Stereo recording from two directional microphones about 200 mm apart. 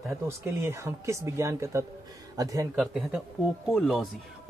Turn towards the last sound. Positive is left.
turn(degrees=0)  # may be behind; listen again after turning